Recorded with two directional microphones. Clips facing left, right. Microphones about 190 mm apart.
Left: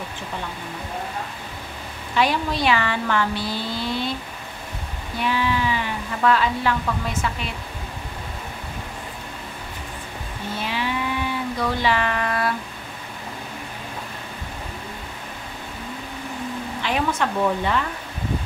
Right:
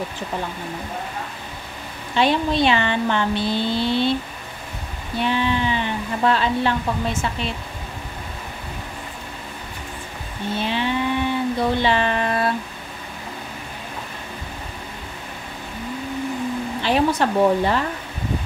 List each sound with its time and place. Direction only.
2.1 s speech: 25° right (ahead or behind)
5.2 s speech: 25° right (ahead or behind)
10.6 s a sound: 25° right (ahead or behind)
16.8 s speech: 35° right (ahead or behind)